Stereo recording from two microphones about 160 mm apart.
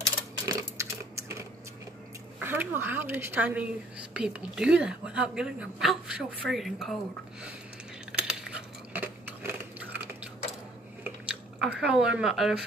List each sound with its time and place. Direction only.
0.5 s typing: 20° right (ahead or behind)
2.4 s a woman's voice: 15° right (ahead or behind)
8.1 s biting: 5° right (ahead or behind)
11.2 s speech: 10° right (ahead or behind)